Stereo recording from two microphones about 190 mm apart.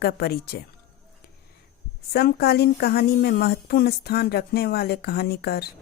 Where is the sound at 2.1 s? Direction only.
55° left (ahead or behind).